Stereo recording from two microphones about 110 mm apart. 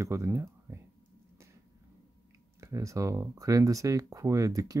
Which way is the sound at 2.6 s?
30° right (ahead or behind).